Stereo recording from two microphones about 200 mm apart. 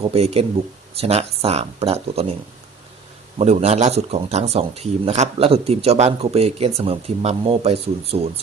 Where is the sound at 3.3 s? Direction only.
35° right (ahead or behind).